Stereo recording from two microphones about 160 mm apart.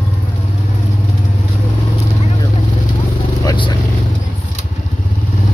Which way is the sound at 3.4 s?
30° left (ahead or behind).